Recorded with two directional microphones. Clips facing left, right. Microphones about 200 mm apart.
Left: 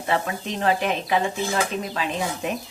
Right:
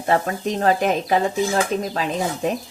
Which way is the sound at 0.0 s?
45° right (ahead or behind).